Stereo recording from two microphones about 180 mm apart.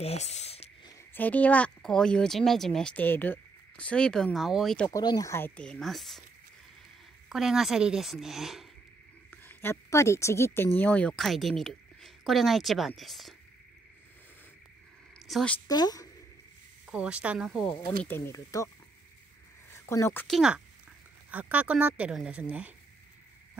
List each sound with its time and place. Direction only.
0.0 s a sound: 35° left (ahead or behind)
1.1 s speech: 10° left (ahead or behind)
4.9 s speech: 20° left (ahead or behind)
5.6 s speech: 5° left (ahead or behind)
7.2 s speech: centre (ahead or behind)
9.3 s a woman's voice: 10° left (ahead or behind)
15.1 s a sound: centre (ahead or behind)
15.7 s speech: 20° left (ahead or behind)
16.8 s speech: 5° right (ahead or behind)
18.0 s speech: 15° left (ahead or behind)
19.9 s speech: 15° left (ahead or behind)
20.2 s speech: centre (ahead or behind)